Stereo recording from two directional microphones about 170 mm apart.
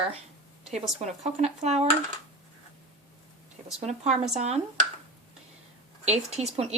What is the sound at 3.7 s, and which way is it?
Speech, 40° right (ahead or behind).